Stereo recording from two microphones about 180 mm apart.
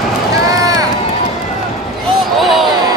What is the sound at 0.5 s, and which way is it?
Run, 20° right (ahead or behind).